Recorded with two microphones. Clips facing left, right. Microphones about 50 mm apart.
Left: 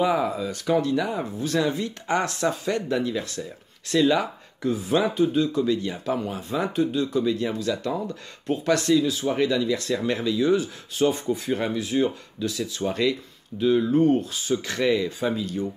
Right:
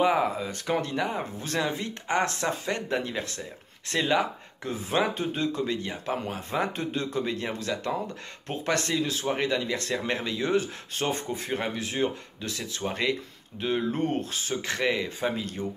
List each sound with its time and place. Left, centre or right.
0.0 s speech: right
11.4 s speech: right
12.8 s speech: right